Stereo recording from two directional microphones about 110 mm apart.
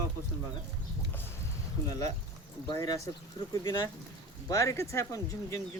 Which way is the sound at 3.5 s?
25° left (ahead or behind).